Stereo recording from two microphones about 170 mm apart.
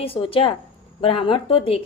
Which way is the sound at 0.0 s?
35° left (ahead or behind).